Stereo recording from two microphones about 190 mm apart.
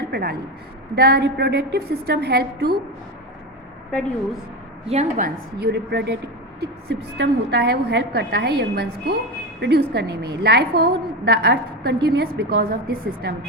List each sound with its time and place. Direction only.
0.1 s a woman's voice: 55° right (ahead or behind)
4.9 s a woman's voice: 35° right (ahead or behind)
5.5 s a woman's voice: 60° right (ahead or behind)